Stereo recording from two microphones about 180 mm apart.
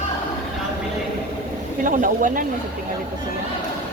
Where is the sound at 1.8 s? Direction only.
50° right (ahead or behind).